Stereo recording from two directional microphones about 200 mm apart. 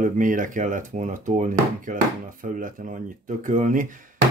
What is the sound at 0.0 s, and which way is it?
Speech, 40° right (ahead or behind).